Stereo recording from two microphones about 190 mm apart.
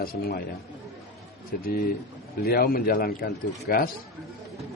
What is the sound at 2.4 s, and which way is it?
A man's voice, 55° left (ahead or behind).